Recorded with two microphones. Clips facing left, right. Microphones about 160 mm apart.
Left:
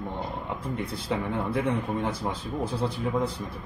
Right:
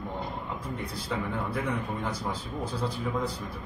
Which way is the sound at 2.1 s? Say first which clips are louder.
Left 3 dB; 25° left (ahead or behind).